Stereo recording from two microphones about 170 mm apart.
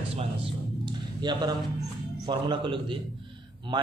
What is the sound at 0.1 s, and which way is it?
Music, 35° right (ahead or behind).